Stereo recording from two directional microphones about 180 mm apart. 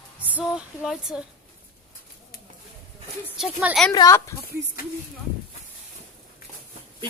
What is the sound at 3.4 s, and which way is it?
Speech, 5° right (ahead or behind).